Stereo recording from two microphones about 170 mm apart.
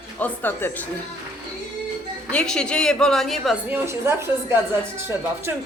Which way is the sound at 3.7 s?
15° right (ahead or behind).